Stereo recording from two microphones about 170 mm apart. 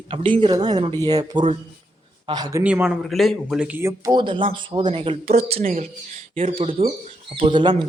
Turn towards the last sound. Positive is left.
turn(degrees=-30)  # may be behind; listen again after turning